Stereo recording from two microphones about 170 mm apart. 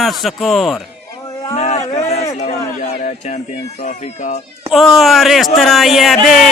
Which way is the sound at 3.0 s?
40° left (ahead or behind).